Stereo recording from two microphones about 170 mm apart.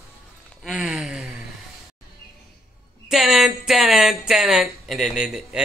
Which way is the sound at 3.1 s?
Centre (ahead or behind).